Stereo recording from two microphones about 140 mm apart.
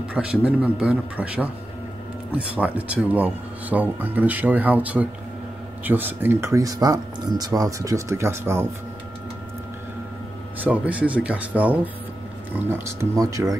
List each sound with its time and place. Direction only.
0.1 s speech: 5° right (ahead or behind)
10.6 s speech: 10° right (ahead or behind)